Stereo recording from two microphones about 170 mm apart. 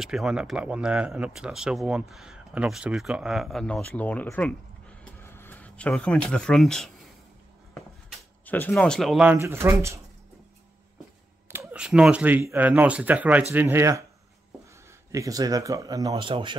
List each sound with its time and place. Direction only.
0.0 s speech: 5° right (ahead or behind)
8.5 s speech: 10° left (ahead or behind); by 9.9 s 15° right (ahead or behind)
11.5 s speech: 5° right (ahead or behind)
15.0 s speech: 20° right (ahead or behind)